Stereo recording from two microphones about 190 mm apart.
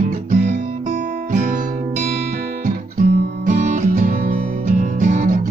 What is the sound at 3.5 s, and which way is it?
Music, 40° right (ahead or behind).